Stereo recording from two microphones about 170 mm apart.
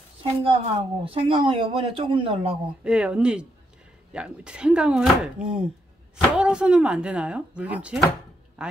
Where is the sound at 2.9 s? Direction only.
5° right (ahead or behind).